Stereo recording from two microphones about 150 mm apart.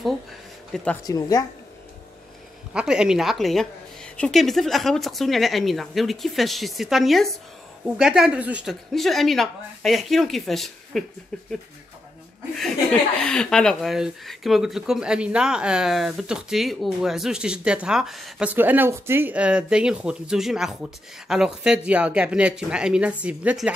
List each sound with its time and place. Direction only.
1.0 s a woman's voice: 25° left (ahead or behind)
2.7 s speech: 5° right (ahead or behind)
13.2 s speech: 5° left (ahead or behind)
18.5 s speech: 15° right (ahead or behind)